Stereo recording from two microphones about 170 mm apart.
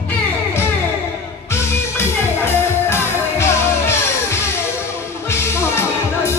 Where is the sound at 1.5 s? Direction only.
15° left (ahead or behind).